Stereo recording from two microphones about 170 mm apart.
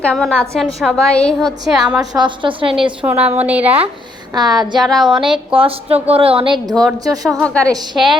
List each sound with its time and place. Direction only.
0.0 s a woman's voice: 5° left (ahead or behind)
2.0 s a woman's voice: 25° right (ahead or behind)
3.0 s speech: 10° right (ahead or behind)
4.4 s a woman's voice: 25° right (ahead or behind)
4.8 s a woman's voice: centre (ahead or behind)
5.5 s a woman's voice: 35° right (ahead or behind)
7.4 s a woman's voice: 5° left (ahead or behind)